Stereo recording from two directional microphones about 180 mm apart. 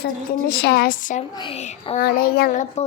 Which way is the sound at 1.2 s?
30° left (ahead or behind).